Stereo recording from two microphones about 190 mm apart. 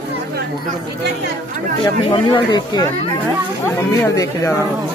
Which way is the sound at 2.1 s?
25° left (ahead or behind).